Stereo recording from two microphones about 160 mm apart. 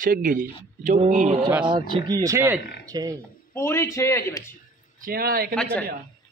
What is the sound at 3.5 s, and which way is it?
Speech, 15° left (ahead or behind).